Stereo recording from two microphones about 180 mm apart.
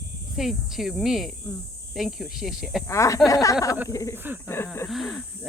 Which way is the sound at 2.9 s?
15° left (ahead or behind).